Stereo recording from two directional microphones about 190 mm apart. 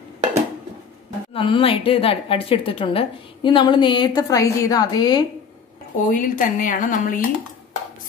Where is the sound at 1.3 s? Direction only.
30° left (ahead or behind).